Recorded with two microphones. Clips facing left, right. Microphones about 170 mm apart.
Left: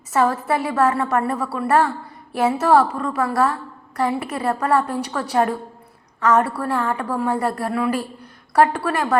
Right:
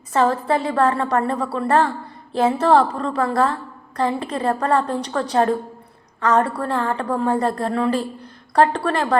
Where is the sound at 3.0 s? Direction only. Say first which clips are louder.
Right 1 dB; 30° right (ahead or behind).